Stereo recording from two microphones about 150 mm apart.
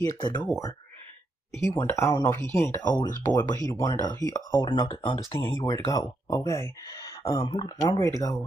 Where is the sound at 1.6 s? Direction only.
20° left (ahead or behind).